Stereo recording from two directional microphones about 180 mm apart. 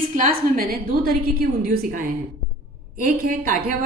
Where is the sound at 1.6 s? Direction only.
55° right (ahead or behind).